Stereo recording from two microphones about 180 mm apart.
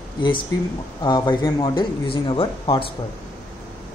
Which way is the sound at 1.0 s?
25° left (ahead or behind).